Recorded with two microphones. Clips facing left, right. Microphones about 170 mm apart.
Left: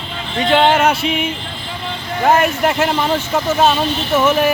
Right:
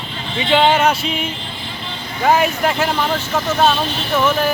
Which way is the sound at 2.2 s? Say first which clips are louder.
Left 1 dB; centre (ahead or behind).